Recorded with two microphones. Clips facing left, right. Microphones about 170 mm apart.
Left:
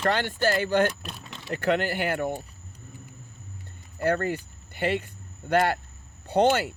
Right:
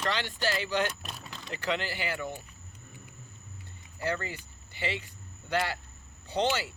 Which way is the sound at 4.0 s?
55° left (ahead or behind).